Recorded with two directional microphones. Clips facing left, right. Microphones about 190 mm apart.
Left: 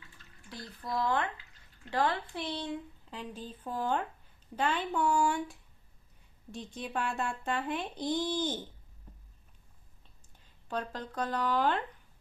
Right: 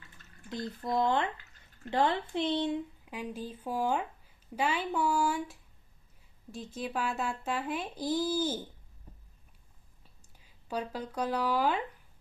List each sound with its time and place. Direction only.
0.5 s speech: 20° right (ahead or behind)
3.1 s speech: 10° right (ahead or behind)
10.4 s speech: 10° right (ahead or behind)